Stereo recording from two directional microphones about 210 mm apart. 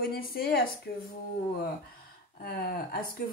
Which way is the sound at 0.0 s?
45° left (ahead or behind).